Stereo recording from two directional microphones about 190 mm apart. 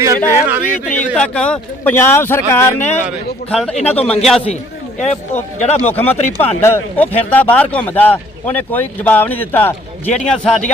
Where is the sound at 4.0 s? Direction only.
30° left (ahead or behind).